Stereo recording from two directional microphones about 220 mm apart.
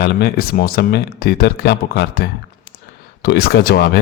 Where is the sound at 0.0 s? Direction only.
45° left (ahead or behind).